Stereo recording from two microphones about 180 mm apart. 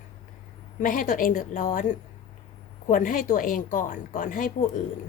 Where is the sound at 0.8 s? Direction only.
50° left (ahead or behind).